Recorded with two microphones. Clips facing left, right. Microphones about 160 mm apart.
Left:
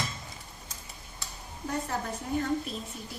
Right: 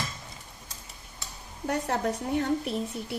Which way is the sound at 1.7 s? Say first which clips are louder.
Right 5 dB; 70° right (ahead or behind).